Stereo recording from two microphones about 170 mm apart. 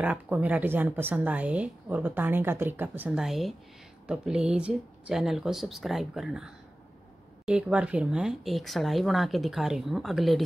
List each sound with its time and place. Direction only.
0.0 s a woman's voice: 10° right (ahead or behind)